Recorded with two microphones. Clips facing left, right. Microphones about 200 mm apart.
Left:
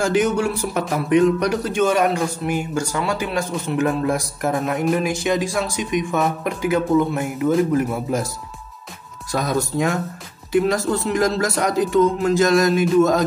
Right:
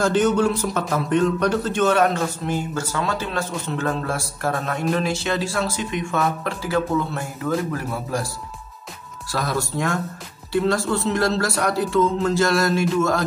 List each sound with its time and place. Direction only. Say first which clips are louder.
0.0 s speech: even; 10° left (ahead or behind)
9.3 s speech: left 3 dB; 20° left (ahead or behind)